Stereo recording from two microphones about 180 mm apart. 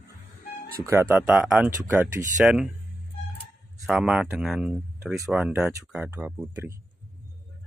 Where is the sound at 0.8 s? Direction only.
15° right (ahead or behind).